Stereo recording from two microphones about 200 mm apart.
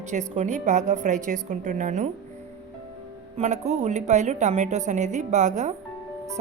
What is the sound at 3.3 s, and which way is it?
A woman's voice, 35° right (ahead or behind).